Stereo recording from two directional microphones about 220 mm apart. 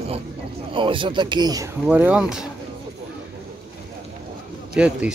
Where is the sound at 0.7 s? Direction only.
20° right (ahead or behind).